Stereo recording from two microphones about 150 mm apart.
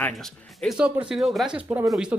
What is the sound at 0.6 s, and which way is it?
Speech, 5° right (ahead or behind).